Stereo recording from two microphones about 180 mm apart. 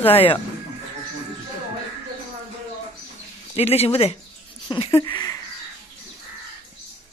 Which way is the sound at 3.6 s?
35° left (ahead or behind).